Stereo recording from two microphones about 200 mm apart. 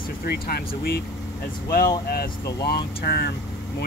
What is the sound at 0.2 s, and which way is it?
Speech, 50° left (ahead or behind).